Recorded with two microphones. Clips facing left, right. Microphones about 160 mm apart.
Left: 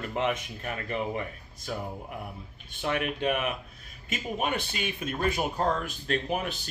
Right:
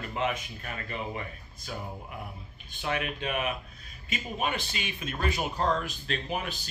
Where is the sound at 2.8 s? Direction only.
55° left (ahead or behind).